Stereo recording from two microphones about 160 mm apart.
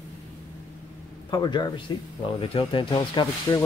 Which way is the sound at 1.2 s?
25° left (ahead or behind).